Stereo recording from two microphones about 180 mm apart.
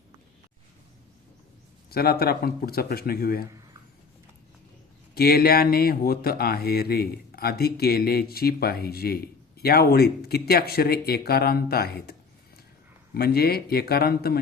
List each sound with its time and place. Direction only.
1.9 s speech: 60° left (ahead or behind)
5.1 s speech: 60° left (ahead or behind)
13.1 s speech: 60° left (ahead or behind)